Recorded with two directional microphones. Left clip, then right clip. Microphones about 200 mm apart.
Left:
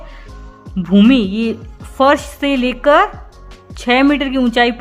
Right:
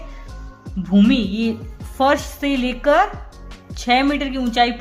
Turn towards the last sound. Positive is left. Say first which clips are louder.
# left 4 dB
turn(degrees=40)  # may be behind; listen again after turning